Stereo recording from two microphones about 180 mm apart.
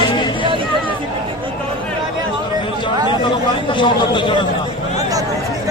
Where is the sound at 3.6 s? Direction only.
25° left (ahead or behind).